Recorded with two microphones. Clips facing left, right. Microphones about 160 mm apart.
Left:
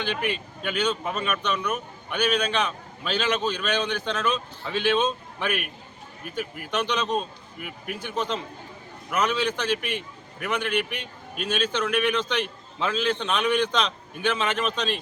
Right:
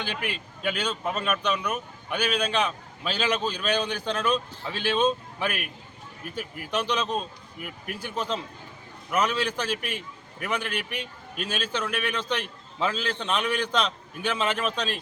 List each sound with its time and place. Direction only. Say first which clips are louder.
0.0 s a man's voice: left 5 dB; 5° right (ahead or behind)
4.1 s speech: right 1 dB; 35° right (ahead or behind)
4.9 s a man's voice: right 1 dB; centre (ahead or behind)